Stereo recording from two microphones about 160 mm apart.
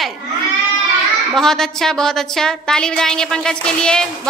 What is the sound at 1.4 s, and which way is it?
A woman's voice, 5° left (ahead or behind).